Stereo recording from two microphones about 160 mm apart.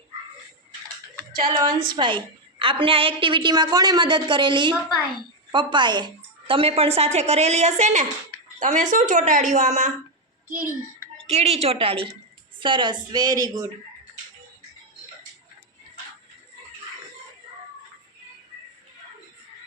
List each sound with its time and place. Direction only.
1.5 s a woman's voice: 25° right (ahead or behind); by 9.9 s 45° right (ahead or behind)
11.3 s a woman's voice: 40° right (ahead or behind); by 13.7 s 25° right (ahead or behind)